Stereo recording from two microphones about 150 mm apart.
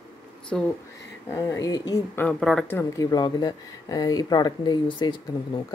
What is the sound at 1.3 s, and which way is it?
Speech, 20° left (ahead or behind).